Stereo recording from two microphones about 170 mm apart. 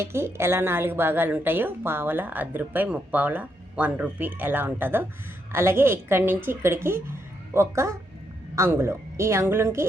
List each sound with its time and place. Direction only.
0.0 s a woman's voice: 15° right (ahead or behind)